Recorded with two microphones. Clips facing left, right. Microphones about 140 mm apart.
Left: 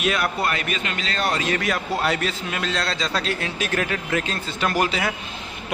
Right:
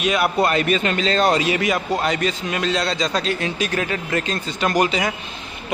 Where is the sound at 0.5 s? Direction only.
30° right (ahead or behind); by 1.6 s 15° right (ahead or behind).